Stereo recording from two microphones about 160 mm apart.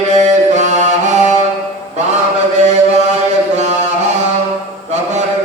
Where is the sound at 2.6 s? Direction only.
45° right (ahead or behind).